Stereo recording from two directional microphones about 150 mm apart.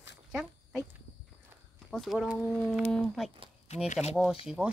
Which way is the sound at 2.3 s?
10° left (ahead or behind).